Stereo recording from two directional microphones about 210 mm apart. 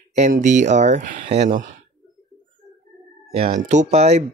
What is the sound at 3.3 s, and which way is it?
Speech, 30° right (ahead or behind).